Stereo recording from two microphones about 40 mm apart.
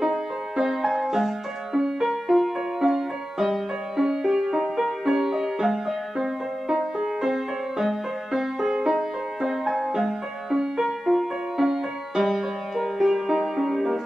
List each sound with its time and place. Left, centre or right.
0.0 s music: centre